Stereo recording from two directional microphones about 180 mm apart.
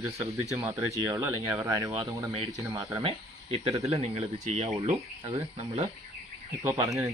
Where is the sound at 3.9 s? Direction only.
35° right (ahead or behind).